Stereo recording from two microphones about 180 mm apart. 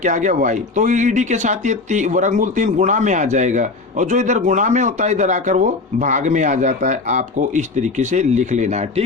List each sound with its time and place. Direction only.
0.0 s speech: 45° right (ahead or behind)